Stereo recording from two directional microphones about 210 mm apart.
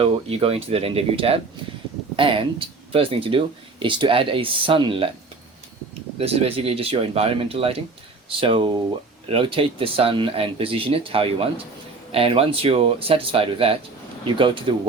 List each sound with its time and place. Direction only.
0.0 s speech: 25° right (ahead or behind)
6.1 s speech: 30° right (ahead or behind)